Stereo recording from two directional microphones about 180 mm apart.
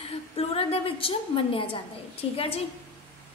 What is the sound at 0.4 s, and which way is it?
A woman's voice, 30° left (ahead or behind).